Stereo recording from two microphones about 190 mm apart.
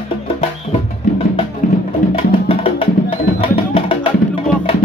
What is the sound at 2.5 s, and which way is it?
Music, 30° left (ahead or behind).